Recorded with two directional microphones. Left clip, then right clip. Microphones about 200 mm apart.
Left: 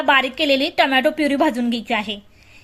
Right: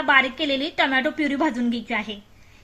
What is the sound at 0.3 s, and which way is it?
A woman's voice, 60° left (ahead or behind).